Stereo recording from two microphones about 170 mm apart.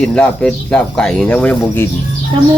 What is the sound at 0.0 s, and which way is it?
Speech, 5° left (ahead or behind).